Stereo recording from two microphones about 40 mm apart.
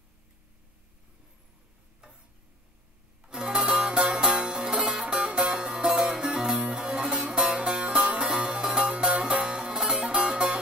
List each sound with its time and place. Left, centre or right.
3.3 s music: centre